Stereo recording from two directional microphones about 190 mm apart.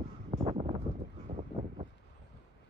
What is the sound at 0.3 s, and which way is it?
Wind noise, 30° right (ahead or behind).